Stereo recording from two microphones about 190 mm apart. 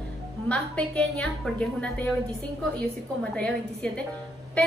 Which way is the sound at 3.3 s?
5° left (ahead or behind).